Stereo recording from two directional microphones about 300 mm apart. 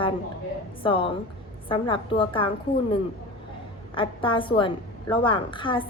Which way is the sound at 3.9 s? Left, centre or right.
Centre.